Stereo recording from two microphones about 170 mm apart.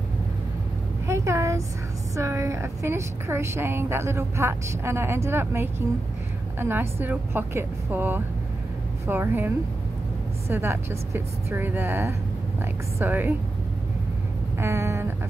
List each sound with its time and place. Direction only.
1.0 s a sound: 15° right (ahead or behind)
2.1 s a woman's voice: 15° right (ahead or behind)
10.5 s a woman's voice: 15° right (ahead or behind)
14.6 s vehicle: 15° right (ahead or behind)